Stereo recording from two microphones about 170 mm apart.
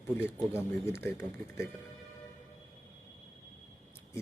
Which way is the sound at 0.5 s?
15° left (ahead or behind).